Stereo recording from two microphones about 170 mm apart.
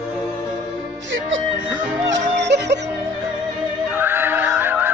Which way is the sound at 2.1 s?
90° right.